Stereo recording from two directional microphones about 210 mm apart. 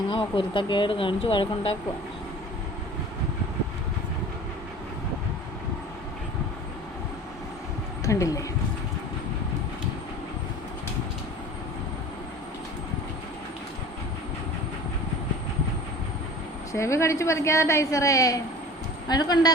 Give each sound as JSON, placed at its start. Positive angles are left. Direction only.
{"t": 0.1, "sound": "speech", "side_deg": 25}
{"t": 8.0, "sound": "speech", "side_deg": 15}
{"t": 16.7, "sound": "a woman's voice", "side_deg": 15}